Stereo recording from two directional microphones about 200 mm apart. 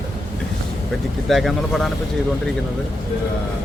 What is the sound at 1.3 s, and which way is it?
Speech, centre (ahead or behind).